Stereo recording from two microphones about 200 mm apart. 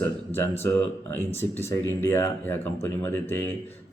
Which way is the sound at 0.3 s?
10° left (ahead or behind).